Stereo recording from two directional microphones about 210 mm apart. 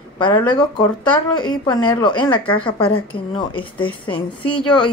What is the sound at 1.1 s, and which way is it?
A woman's voice, 20° left (ahead or behind).